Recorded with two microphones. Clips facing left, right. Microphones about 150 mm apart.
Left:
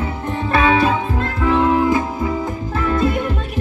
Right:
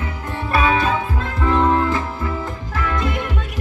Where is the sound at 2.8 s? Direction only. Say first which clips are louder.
Left 4 dB; 30° left (ahead or behind).